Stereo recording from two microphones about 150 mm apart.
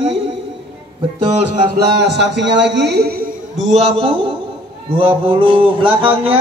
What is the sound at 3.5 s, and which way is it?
Speech, 45° right (ahead or behind).